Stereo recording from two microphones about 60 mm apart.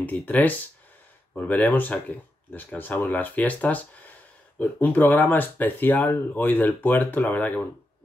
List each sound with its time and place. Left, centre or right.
0.0 s speech: left